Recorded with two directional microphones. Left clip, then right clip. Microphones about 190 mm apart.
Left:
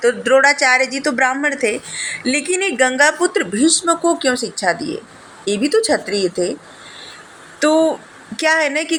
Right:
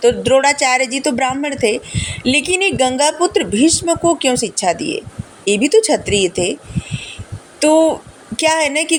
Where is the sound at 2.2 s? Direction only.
5° right (ahead or behind).